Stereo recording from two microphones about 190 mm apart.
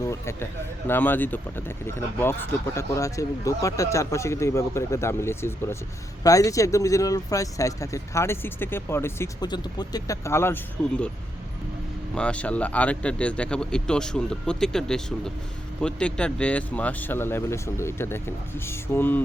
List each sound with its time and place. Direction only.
0.0 s speech: 15° left (ahead or behind)
2.7 s speech: 15° left (ahead or behind)
12.1 s a man's voice: 5° left (ahead or behind)